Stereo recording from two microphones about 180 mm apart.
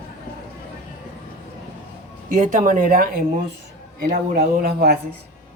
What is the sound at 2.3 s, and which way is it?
Speech, 40° right (ahead or behind).